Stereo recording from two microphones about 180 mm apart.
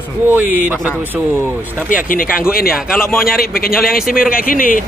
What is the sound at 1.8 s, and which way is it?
Speech, 50° left (ahead or behind).